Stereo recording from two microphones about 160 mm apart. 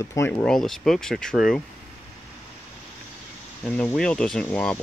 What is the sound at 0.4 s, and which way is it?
Speech, 5° left (ahead or behind).